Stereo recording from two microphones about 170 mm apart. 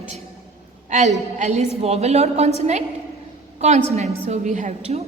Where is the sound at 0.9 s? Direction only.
45° right (ahead or behind).